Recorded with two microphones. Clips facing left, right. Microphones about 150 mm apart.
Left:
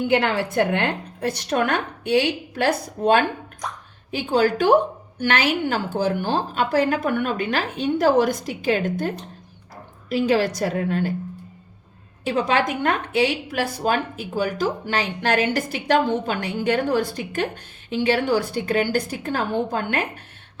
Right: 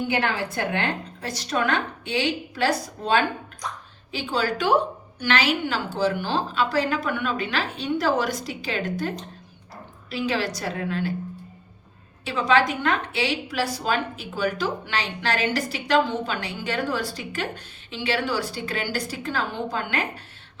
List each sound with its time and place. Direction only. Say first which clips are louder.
0.7 s a woman's voice: left 3 dB; 60° left (ahead or behind); by 11.1 s 45° left (ahead or behind)
12.2 s a woman's voice: even; 45° left (ahead or behind)